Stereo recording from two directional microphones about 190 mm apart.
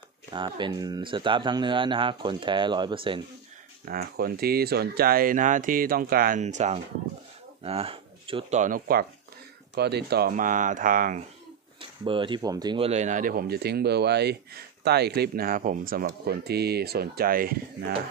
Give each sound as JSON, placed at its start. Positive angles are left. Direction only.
{"t": 0.3, "sound": "speech", "side_deg": -25}
{"t": 3.8, "sound": "speech", "side_deg": -50}
{"t": 8.5, "sound": "speech", "side_deg": -45}
{"t": 9.8, "sound": "speech", "side_deg": -60}
{"t": 11.8, "sound": "speech", "side_deg": -25}